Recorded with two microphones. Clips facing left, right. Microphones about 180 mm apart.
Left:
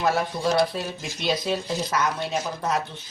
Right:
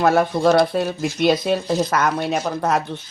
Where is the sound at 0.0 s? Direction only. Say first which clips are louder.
Right 8 dB; 55° right (ahead or behind).